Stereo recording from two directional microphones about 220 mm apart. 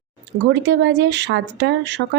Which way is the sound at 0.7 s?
55° right (ahead or behind).